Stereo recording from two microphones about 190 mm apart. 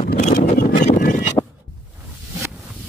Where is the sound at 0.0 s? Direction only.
45° left (ahead or behind).